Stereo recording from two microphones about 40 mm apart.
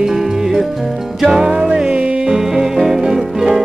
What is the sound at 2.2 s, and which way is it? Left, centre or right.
Music, centre.